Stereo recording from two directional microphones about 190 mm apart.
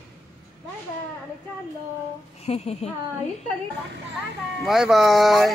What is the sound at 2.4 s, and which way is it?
Speech, 35° left (ahead or behind).